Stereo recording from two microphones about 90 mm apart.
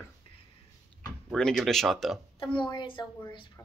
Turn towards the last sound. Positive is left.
turn(degrees=60)  # may be behind; listen again after turning